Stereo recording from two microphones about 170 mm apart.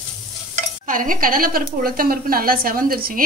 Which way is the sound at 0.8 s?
50° right (ahead or behind).